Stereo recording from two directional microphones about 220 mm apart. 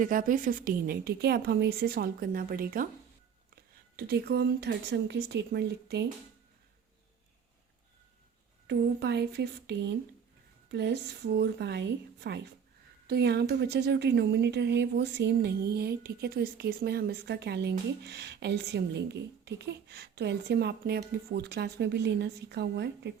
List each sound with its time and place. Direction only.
0.0 s a woman's voice: 40° right (ahead or behind)
8.6 s speech: 50° right (ahead or behind)